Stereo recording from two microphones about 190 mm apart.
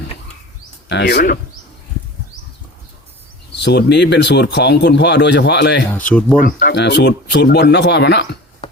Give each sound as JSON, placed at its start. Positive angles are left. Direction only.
{"t": 0.9, "sound": "speech", "side_deg": 65}
{"t": 3.5, "sound": "speech", "side_deg": 60}
{"t": 5.9, "sound": "speech", "side_deg": 5}
{"t": 6.3, "sound": "speech", "side_deg": 45}
{"t": 6.7, "sound": "speech", "side_deg": 65}